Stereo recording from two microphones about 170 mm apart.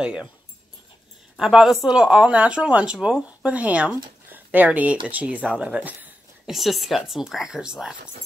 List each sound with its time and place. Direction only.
0.0 s speech: 5° right (ahead or behind)
1.3 s speech: centre (ahead or behind)